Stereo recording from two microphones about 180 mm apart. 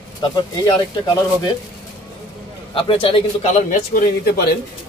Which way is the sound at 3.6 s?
50° left (ahead or behind).